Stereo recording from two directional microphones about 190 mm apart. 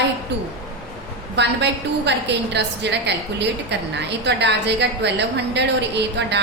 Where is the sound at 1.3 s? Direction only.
65° right (ahead or behind).